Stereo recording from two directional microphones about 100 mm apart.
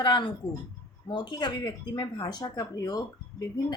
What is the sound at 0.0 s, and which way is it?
A woman's voice, 50° left (ahead or behind).